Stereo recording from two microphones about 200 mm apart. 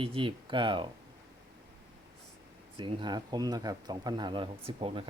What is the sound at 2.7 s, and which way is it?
Speech, 25° right (ahead or behind).